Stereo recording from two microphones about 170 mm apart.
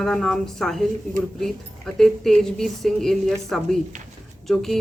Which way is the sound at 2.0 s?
Centre (ahead or behind).